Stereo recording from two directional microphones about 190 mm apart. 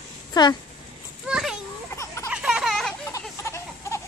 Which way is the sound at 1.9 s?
15° left (ahead or behind).